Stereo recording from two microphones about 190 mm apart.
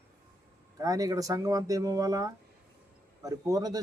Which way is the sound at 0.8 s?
20° right (ahead or behind).